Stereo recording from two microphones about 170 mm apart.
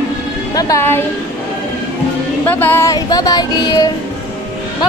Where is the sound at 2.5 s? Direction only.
10° left (ahead or behind).